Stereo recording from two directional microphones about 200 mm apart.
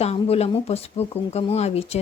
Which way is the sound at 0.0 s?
30° left (ahead or behind).